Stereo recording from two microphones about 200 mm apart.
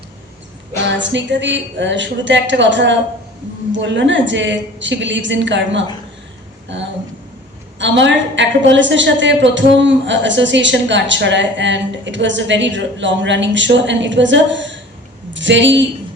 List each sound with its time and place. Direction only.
0.9 s a woman's voice: 65° right (ahead or behind)